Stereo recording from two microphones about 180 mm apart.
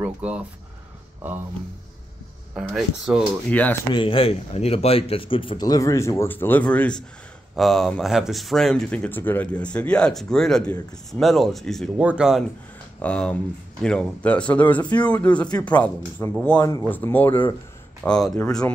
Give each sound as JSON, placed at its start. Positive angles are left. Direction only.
{"t": 0.0, "sound": "speech", "side_deg": -5}
{"t": 2.5, "sound": "speech", "side_deg": 0}
{"t": 3.9, "sound": "speech", "side_deg": 30}